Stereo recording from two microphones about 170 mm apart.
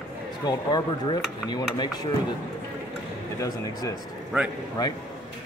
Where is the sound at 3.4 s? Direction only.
20° left (ahead or behind).